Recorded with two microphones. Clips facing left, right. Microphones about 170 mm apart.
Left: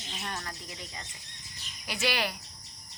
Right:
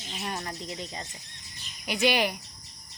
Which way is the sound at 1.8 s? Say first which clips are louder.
Right 6 dB; 15° right (ahead or behind).